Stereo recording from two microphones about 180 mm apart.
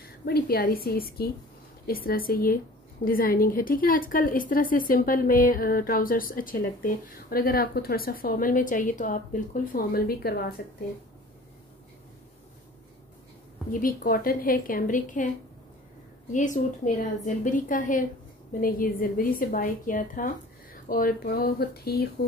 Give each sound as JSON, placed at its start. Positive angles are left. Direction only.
{"t": 0.0, "sound": "a woman's voice", "side_deg": 60}
{"t": 13.7, "sound": "a woman's voice", "side_deg": 50}
{"t": 16.3, "sound": "a woman's voice", "side_deg": 45}